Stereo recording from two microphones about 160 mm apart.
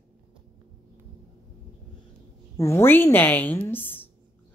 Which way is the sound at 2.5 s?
15° left (ahead or behind).